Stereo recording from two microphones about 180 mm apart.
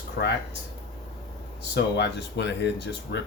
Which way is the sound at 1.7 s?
70° left (ahead or behind).